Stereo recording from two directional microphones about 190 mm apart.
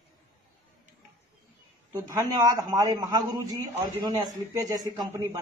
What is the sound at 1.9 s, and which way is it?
A man's voice, 20° right (ahead or behind).